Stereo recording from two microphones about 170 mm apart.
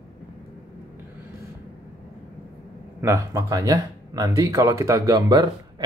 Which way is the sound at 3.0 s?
15° right (ahead or behind).